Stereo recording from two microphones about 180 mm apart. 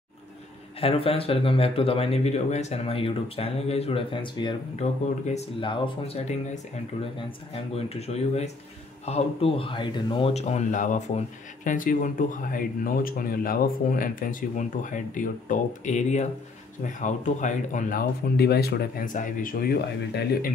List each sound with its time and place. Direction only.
0.7 s speech: 30° left (ahead or behind)
10.3 s speech: 40° left (ahead or behind); by 20.5 s 55° left (ahead or behind)